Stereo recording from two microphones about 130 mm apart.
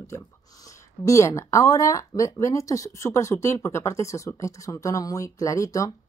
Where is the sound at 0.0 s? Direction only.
25° left (ahead or behind).